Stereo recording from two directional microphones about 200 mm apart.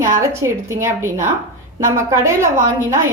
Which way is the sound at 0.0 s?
15° right (ahead or behind).